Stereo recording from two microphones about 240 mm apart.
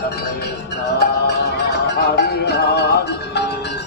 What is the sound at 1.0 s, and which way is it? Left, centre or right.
Music, left.